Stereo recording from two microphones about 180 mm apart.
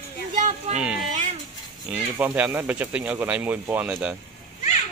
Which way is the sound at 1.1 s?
45° right (ahead or behind).